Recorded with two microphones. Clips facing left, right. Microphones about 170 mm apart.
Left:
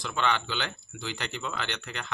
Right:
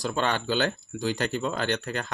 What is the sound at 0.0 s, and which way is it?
A man's voice, 40° right (ahead or behind).